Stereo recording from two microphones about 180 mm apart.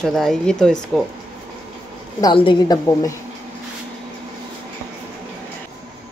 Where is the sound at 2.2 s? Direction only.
30° left (ahead or behind).